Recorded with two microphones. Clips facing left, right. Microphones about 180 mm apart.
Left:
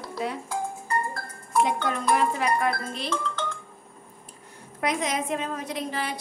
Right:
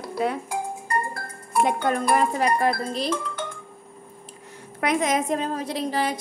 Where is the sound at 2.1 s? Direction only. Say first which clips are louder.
Right 3 dB; 40° right (ahead or behind).